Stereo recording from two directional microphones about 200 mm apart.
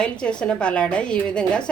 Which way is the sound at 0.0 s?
5° left (ahead or behind).